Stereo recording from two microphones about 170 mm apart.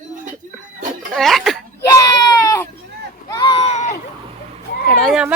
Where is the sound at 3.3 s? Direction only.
25° left (ahead or behind).